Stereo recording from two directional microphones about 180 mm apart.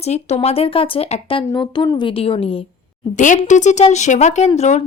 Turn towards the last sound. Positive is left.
turn(degrees=35)  # may be behind; listen again after turning